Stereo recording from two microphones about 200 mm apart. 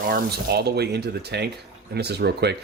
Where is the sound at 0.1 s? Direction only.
50° right (ahead or behind).